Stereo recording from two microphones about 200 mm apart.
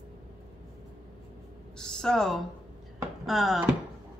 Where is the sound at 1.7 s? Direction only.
5° left (ahead or behind).